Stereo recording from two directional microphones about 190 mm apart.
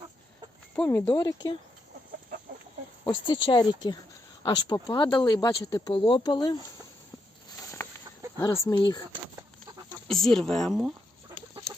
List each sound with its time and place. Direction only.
0.8 s speech: 10° left (ahead or behind)
3.0 s speech: 25° left (ahead or behind)
7.6 s a sound: 15° left (ahead or behind)
8.6 s speech: 20° left (ahead or behind)
10.1 s speech: centre (ahead or behind)